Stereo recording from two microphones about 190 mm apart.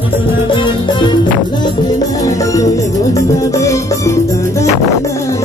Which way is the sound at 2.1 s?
20° left (ahead or behind).